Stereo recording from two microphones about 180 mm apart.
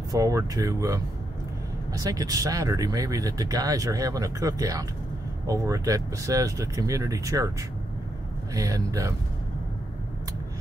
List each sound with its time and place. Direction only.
0.1 s speech: 20° right (ahead or behind)
8.5 s speech: 20° right (ahead or behind)